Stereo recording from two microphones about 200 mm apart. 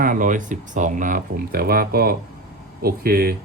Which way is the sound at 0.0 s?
40° right (ahead or behind).